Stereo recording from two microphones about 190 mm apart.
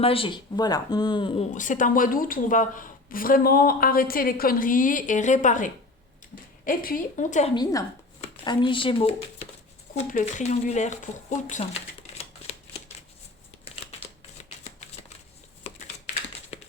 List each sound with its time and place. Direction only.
0.0 s speech: 30° left (ahead or behind)
1.5 s a woman's voice: 40° left (ahead or behind)
7.5 s speech: 20° left (ahead or behind)